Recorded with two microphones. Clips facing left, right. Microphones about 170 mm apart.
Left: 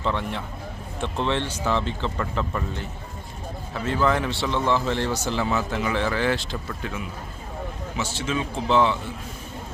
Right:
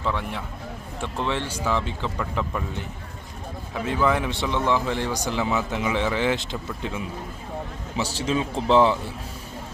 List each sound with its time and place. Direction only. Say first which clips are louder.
0.0 s speech: left 1 dB; 5° right (ahead or behind)
3.8 s speech: even; 10° right (ahead or behind)
7.9 s a man's voice: right 3 dB; 35° right (ahead or behind)